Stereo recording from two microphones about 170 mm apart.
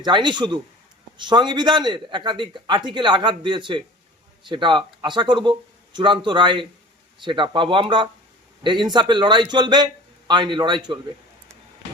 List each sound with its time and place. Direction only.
0.0 s a man's voice: 25° right (ahead or behind)